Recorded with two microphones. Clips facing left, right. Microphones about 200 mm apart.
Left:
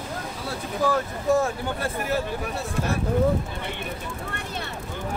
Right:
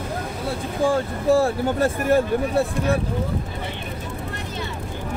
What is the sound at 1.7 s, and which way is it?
Speech, 50° right (ahead or behind).